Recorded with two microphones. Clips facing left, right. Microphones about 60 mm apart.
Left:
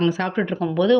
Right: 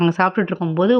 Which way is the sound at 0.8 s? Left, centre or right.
Right.